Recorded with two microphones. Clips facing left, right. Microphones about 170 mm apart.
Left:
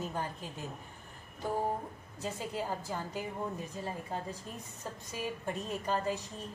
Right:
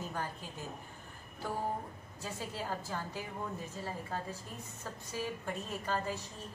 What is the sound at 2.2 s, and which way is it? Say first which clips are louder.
A woman's voice: left 3 dB; 20° left (ahead or behind).